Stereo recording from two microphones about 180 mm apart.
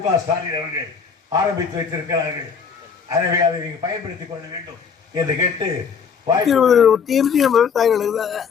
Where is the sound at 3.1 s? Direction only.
20° right (ahead or behind).